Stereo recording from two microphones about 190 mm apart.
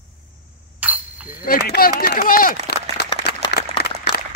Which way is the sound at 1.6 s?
50° left (ahead or behind).